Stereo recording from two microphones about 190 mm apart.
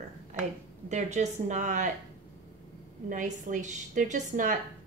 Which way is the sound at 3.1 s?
40° right (ahead or behind).